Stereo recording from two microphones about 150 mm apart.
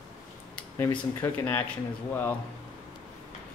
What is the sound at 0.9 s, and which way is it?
Speech, 25° left (ahead or behind).